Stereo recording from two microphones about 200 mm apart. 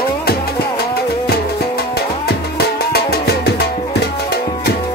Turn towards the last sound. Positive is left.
turn(degrees=55)  # may be behind; listen again after turning